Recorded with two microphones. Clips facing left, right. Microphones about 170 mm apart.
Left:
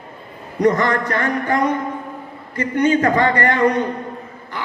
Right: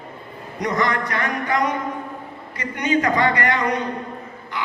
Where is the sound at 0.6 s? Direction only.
50° left (ahead or behind).